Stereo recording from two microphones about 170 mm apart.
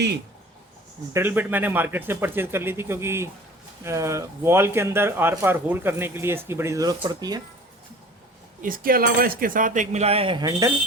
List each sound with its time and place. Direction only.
1.1 s speech: 10° right (ahead or behind)
8.6 s speech: 55° right (ahead or behind); by 10.7 s 25° right (ahead or behind)